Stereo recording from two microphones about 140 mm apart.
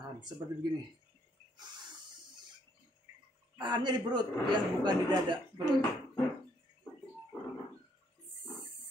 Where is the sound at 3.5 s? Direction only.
30° right (ahead or behind).